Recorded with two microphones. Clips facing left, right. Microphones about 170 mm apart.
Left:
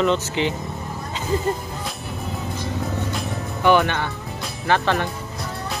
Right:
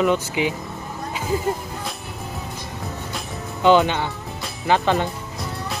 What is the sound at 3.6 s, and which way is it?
Speech, 20° right (ahead or behind).